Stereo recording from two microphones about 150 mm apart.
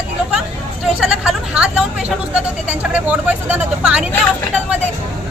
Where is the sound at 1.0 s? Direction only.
5° right (ahead or behind).